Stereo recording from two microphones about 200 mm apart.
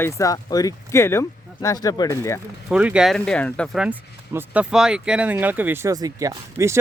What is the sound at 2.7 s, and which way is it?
Speech, 5° right (ahead or behind).